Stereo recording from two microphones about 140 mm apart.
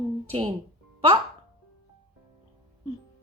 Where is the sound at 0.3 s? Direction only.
40° right (ahead or behind).